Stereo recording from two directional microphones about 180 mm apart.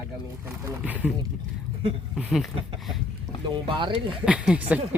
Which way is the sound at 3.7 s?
30° right (ahead or behind).